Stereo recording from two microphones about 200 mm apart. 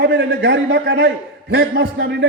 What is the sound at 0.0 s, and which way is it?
A man's voice, 65° right (ahead or behind).